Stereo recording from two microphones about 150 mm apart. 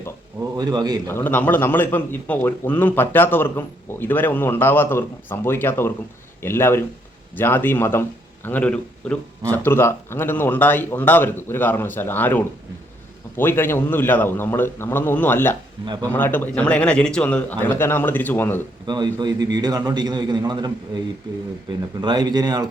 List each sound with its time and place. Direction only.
0.3 s a man's voice: 25° right (ahead or behind)
1.0 s speech: 15° left (ahead or behind)
18.9 s a man's voice: 30° right (ahead or behind)